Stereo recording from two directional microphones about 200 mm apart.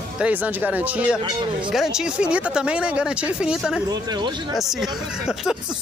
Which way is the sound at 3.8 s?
20° right (ahead or behind).